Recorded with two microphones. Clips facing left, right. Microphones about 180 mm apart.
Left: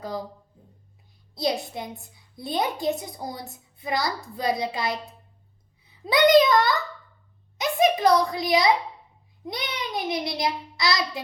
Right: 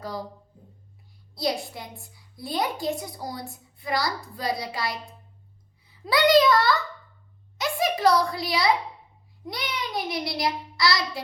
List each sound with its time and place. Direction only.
0.0 s a child's voice: 20° left (ahead or behind)
1.4 s a child's voice: 20° left (ahead or behind)
6.1 s a child's voice: 20° left (ahead or behind)